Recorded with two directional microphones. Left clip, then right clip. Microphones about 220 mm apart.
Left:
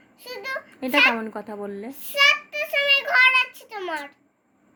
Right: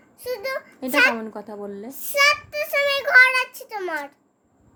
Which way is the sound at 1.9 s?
25° right (ahead or behind).